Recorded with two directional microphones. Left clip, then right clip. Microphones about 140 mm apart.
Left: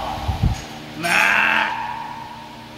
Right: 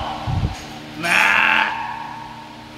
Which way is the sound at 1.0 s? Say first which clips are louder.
Right 1 dB; 20° right (ahead or behind).